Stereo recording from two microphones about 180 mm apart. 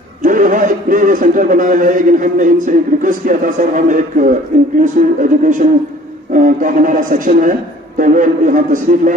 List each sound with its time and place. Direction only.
0.2 s a man's voice: 45° right (ahead or behind)